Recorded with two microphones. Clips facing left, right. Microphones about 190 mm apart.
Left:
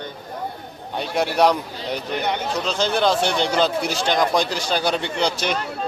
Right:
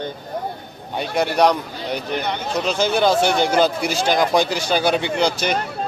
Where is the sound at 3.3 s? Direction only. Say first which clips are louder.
Right 3 dB; 50° right (ahead or behind).